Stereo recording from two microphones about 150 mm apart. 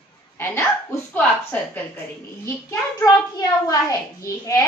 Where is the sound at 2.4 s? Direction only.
20° left (ahead or behind).